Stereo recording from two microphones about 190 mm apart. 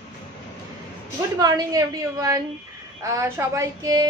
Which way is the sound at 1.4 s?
20° right (ahead or behind).